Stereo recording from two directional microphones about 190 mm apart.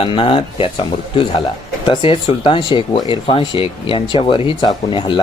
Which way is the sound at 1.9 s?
25° left (ahead or behind).